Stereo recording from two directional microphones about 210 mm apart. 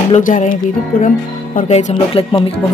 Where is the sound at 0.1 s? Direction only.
35° left (ahead or behind).